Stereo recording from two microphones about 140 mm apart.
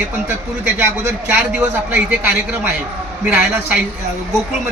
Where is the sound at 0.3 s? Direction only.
20° right (ahead or behind).